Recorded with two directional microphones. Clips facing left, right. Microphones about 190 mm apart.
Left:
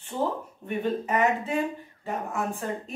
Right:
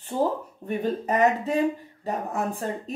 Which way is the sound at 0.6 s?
35° right (ahead or behind).